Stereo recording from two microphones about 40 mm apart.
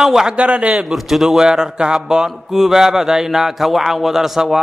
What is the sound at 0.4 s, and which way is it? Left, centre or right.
Speech, right.